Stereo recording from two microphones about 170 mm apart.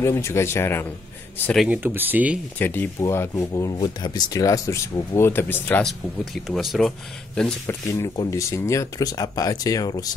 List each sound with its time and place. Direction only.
0.0 s speech: 15° left (ahead or behind)
1.7 s speech: 10° right (ahead or behind)
2.6 s speech: 10° left (ahead or behind)
7.6 s speech: 20° left (ahead or behind)